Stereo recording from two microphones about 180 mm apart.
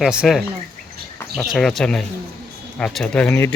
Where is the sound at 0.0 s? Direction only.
5° right (ahead or behind).